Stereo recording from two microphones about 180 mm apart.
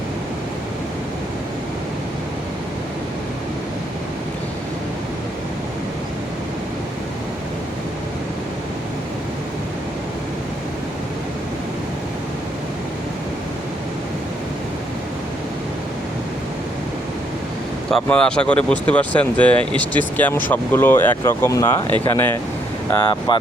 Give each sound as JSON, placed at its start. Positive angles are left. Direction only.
{"t": 17.9, "sound": "speech", "side_deg": 5}